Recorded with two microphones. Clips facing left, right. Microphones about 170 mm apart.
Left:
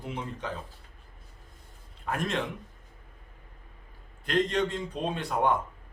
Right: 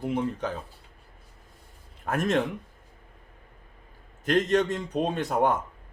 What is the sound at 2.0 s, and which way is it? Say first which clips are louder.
Speech: right 5 dB; 45° right (ahead or behind).